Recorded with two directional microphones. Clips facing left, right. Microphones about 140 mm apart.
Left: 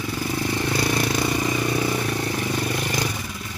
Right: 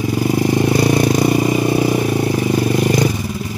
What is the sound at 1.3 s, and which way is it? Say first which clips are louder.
Vehicle: right 8 dB; 25° right (ahead or behind).